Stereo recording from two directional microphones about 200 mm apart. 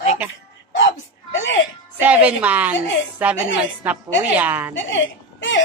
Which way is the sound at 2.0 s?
5° right (ahead or behind).